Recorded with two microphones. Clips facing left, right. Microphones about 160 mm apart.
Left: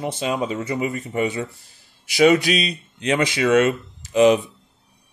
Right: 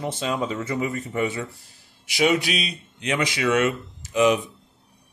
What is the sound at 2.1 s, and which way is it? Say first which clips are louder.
Speech: left 6 dB; 40° left (ahead or behind).